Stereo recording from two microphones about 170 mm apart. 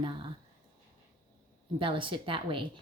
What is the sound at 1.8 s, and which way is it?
A woman's voice, 30° right (ahead or behind).